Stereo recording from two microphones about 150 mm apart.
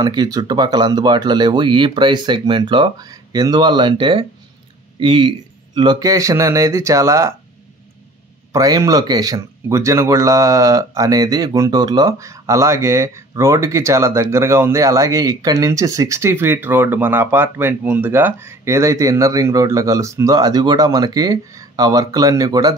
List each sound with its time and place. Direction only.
0.0 s a man's voice: 25° right (ahead or behind)
8.5 s speech: 20° right (ahead or behind)